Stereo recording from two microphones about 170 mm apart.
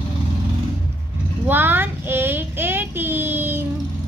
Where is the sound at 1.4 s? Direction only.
10° right (ahead or behind).